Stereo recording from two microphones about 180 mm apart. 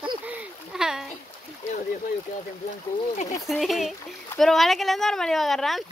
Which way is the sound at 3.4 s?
Centre (ahead or behind).